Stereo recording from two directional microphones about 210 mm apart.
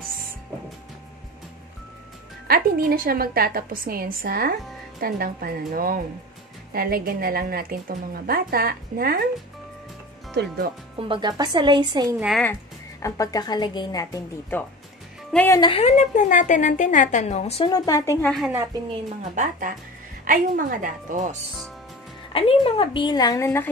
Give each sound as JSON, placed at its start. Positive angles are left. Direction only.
{"t": 2.4, "sound": "speech", "side_deg": -45}
{"t": 10.3, "sound": "speech", "side_deg": -50}
{"t": 11.0, "sound": "a woman's voice", "side_deg": -20}
{"t": 12.2, "sound": "speech", "side_deg": 0}
{"t": 13.0, "sound": "a woman's voice", "side_deg": 15}
{"t": 15.6, "sound": "a woman's voice", "side_deg": 30}
{"t": 17.6, "sound": "a woman's voice", "side_deg": 15}
{"t": 18.5, "sound": "a woman's voice", "side_deg": -15}
{"t": 18.9, "sound": "a woman's voice", "side_deg": -35}
{"t": 22.3, "sound": "a woman's voice", "side_deg": 25}